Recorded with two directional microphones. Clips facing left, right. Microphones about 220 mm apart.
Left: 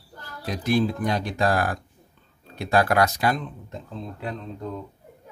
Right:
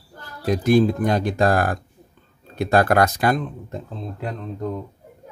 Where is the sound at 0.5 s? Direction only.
50° right (ahead or behind).